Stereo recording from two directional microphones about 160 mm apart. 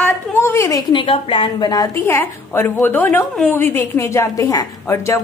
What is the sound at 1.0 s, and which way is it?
A woman's voice, 35° left (ahead or behind).